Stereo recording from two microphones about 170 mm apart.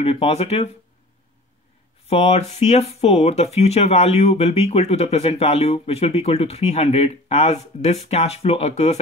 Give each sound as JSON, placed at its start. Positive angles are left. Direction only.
{"t": 0.0, "sound": "speech", "side_deg": 35}
{"t": 2.0, "sound": "speech", "side_deg": 35}